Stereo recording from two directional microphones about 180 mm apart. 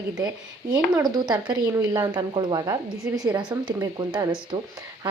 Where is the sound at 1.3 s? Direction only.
20° right (ahead or behind).